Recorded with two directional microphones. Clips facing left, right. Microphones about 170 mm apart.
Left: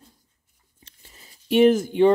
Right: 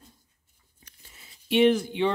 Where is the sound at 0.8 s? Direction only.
40° left (ahead or behind).